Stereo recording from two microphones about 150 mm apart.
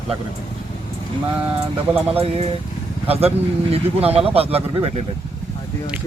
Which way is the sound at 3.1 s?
40° right (ahead or behind).